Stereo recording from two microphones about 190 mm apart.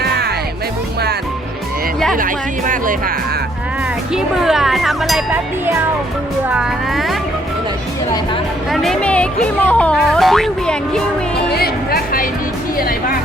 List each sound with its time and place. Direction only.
0.0 s music: 60° right (ahead or behind)
2.1 s speech: 45° right (ahead or behind)
4.1 s speech: 5° right (ahead or behind)
6.5 s speech: centre (ahead or behind)
8.7 s speech: centre (ahead or behind)
11.5 s music: 55° left (ahead or behind)